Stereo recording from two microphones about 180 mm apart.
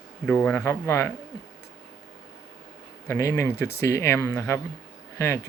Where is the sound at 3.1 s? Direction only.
15° left (ahead or behind).